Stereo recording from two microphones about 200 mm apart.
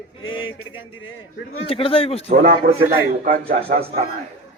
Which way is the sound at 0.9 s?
85° left.